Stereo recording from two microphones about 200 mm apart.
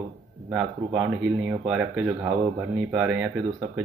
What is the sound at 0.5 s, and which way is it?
Speech, 5° right (ahead or behind).